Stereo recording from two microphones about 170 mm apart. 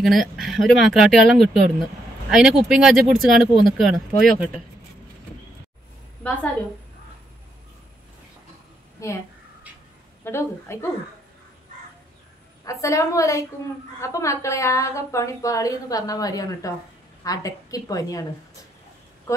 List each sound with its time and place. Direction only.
0.0 s speech: centre (ahead or behind)
6.2 s a woman's voice: 10° left (ahead or behind)
9.0 s a woman's voice: 20° left (ahead or behind)
10.2 s a woman's voice: 15° left (ahead or behind)
12.8 s a woman's voice: 20° left (ahead or behind)
19.3 s a sound: 20° left (ahead or behind)